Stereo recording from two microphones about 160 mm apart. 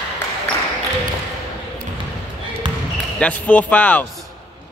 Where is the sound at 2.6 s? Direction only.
30° right (ahead or behind).